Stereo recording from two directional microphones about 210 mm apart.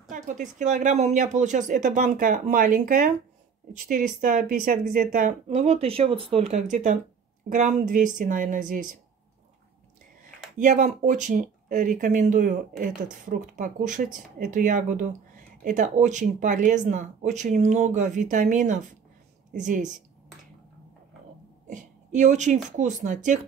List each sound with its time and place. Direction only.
0.1 s speech: 35° right (ahead or behind)
10.6 s speech: 35° right (ahead or behind)
21.6 s speech: 35° right (ahead or behind)